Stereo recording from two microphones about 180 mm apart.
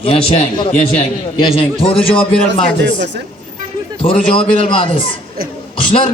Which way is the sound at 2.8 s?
75° right (ahead or behind).